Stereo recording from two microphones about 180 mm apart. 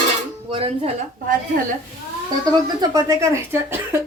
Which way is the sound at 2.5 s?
20° right (ahead or behind).